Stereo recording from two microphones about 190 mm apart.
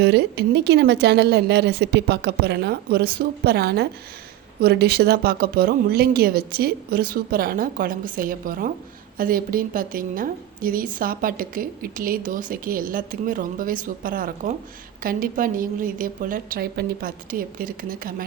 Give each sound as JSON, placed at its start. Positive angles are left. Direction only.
{"t": 0.0, "sound": "a woman's voice", "side_deg": -60}